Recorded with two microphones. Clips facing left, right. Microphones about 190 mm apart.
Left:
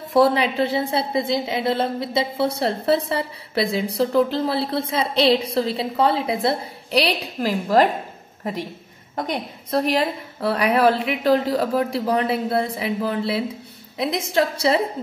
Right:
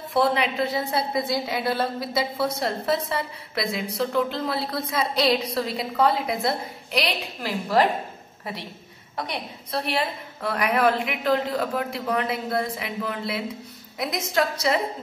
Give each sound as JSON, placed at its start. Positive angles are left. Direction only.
{"t": 0.1, "sound": "a woman's voice", "side_deg": 35}
{"t": 9.1, "sound": "a woman's voice", "side_deg": 50}